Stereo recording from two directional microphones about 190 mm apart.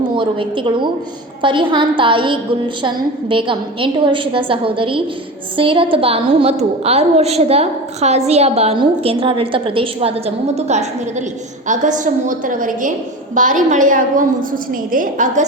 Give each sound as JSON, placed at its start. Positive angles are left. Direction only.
{"t": 0.1, "sound": "a woman's voice", "side_deg": -25}